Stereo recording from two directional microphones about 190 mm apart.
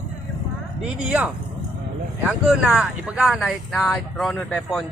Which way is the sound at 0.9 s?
5° right (ahead or behind).